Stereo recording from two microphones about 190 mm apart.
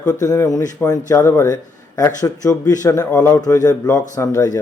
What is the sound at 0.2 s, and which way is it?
A man's voice, 20° left (ahead or behind).